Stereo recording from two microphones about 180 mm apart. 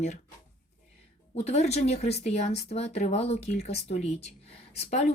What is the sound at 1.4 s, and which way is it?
Speech, 35° left (ahead or behind).